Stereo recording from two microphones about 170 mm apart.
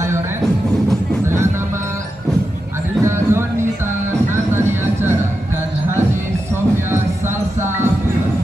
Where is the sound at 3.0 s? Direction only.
15° right (ahead or behind).